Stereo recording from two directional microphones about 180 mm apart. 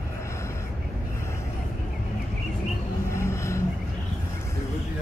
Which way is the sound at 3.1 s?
15° left (ahead or behind).